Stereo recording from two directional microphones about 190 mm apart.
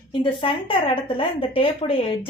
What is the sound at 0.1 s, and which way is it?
Speech, 25° left (ahead or behind).